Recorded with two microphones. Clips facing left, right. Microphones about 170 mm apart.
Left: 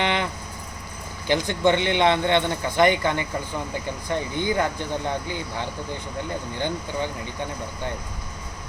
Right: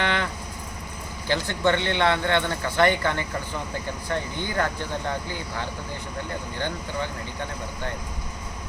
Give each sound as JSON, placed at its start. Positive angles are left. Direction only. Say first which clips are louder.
{"t": 0.0, "sound": "vehicle", "louder": "left 2 dB", "side_deg": 15}
{"t": 1.3, "sound": "speech", "louder": "left 3 dB", "side_deg": 15}